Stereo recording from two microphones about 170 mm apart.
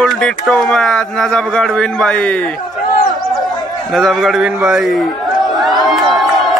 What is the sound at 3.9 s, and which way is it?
Speech, centre (ahead or behind).